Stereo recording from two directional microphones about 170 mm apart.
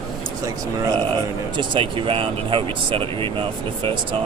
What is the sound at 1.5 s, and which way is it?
Speech, 30° right (ahead or behind).